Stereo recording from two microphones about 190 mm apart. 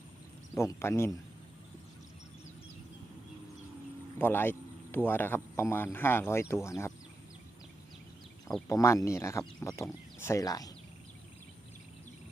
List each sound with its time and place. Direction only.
0.5 s speech: 15° left (ahead or behind)
4.2 s speech: 10° left (ahead or behind)
8.6 s speech: 15° left (ahead or behind)